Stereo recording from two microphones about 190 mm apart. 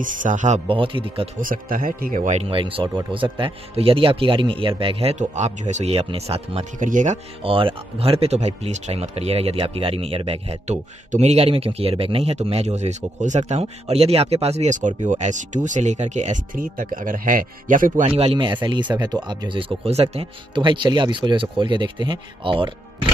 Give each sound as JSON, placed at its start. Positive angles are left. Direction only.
{"t": 0.0, "sound": "speech", "side_deg": -45}
{"t": 0.7, "sound": "speech", "side_deg": -25}
{"t": 1.4, "sound": "speech", "side_deg": -50}
{"t": 18.0, "sound": "speech", "side_deg": -30}